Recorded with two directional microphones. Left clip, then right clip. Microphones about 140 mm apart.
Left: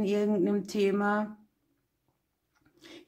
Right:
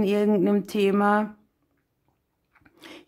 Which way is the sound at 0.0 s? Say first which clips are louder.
Right 6 dB; 25° right (ahead or behind).